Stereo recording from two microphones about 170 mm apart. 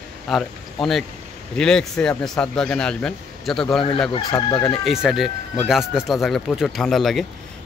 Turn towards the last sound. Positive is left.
turn(degrees=0)  # may be behind; listen again after turning